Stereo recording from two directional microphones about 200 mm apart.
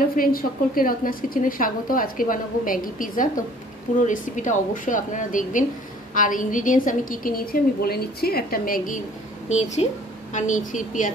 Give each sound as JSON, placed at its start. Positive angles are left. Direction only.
{"t": 0.1, "sound": "a woman's voice", "side_deg": 45}